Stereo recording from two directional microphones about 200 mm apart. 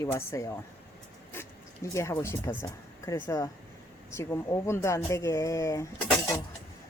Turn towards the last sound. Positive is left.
turn(degrees=15)  # may be behind; listen again after turning